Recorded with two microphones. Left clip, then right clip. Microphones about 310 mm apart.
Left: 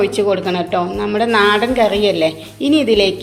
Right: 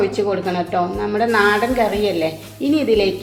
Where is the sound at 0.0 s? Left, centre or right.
Left.